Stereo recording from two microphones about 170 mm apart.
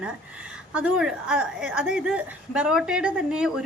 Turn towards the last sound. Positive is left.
turn(degrees=-5)  # may be behind; listen again after turning